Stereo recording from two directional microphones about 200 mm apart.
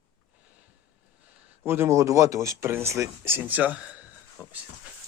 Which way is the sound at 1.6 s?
10° right (ahead or behind).